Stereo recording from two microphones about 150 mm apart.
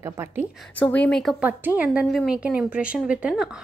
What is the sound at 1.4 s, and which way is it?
A woman's voice, 10° right (ahead or behind).